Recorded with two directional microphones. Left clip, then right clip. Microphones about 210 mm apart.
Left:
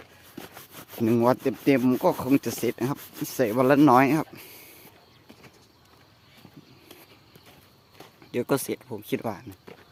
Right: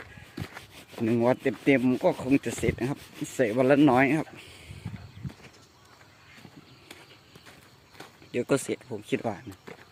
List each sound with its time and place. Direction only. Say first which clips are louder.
1.0 s speech: left 2 dB; 25° left (ahead or behind)
2.4 s speech: left 1 dB; 15° left (ahead or behind)
8.3 s speech: left 1 dB; 15° left (ahead or behind)